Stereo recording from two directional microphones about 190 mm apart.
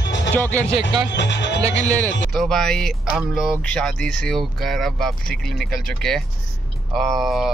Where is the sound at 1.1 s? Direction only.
65° left (ahead or behind).